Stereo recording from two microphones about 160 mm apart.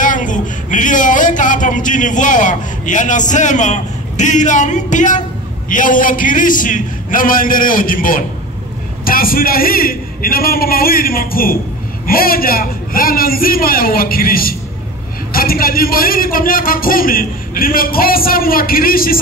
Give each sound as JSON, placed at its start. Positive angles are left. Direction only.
{"t": 0.0, "sound": "a man's voice", "side_deg": 55}